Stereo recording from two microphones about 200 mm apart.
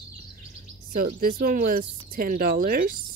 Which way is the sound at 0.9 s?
45° right (ahead or behind).